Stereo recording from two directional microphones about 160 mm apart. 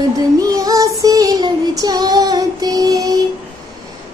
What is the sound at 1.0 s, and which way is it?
Child singing, 20° right (ahead or behind).